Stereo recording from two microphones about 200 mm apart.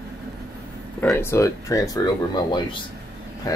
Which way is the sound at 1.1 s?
10° left (ahead or behind).